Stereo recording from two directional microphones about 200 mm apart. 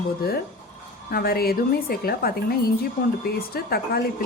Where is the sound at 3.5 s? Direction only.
50° left (ahead or behind).